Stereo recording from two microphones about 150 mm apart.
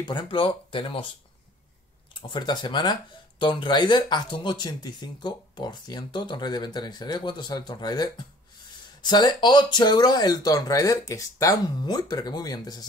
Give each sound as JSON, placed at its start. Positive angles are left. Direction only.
{"t": 0.0, "sound": "speech", "side_deg": 30}
{"t": 2.1, "sound": "speech", "side_deg": 30}